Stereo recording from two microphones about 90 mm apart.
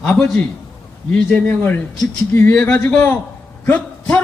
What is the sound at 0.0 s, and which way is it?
Speech, 10° left (ahead or behind).